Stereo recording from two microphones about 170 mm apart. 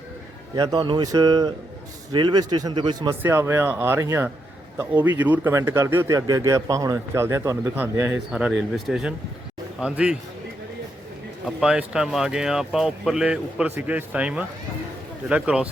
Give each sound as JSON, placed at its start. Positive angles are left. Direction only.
{"t": 0.5, "sound": "speech", "side_deg": -25}
{"t": 3.2, "sound": "speech", "side_deg": -15}
{"t": 11.4, "sound": "speech", "side_deg": -5}